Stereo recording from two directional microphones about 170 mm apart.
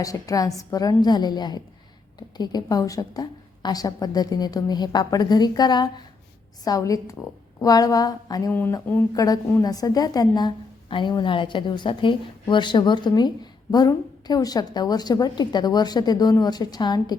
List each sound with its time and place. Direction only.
0.0 s a woman's voice: 20° left (ahead or behind)
8.5 s a woman's voice: 10° left (ahead or behind)